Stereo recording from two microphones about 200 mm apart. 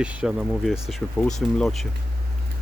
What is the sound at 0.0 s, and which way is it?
Speech, 5° right (ahead or behind).